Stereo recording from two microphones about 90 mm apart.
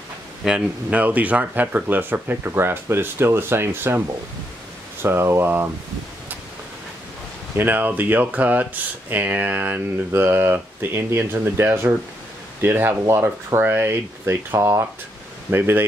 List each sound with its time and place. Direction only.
0.5 s speech: 10° right (ahead or behind)
5.0 s speech: 25° right (ahead or behind)
7.5 s speech: 20° right (ahead or behind)